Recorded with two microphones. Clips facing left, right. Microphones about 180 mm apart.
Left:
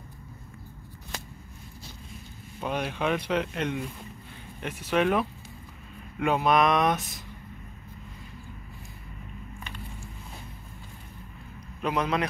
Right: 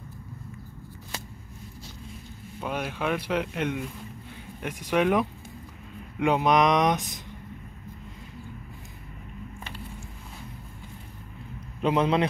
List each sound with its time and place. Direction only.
2.6 s speech: 5° right (ahead or behind)
11.8 s a man's voice: 25° right (ahead or behind)